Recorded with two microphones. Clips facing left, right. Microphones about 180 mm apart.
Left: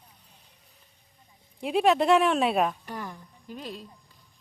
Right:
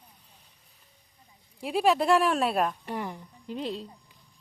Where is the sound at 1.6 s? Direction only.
Centre (ahead or behind).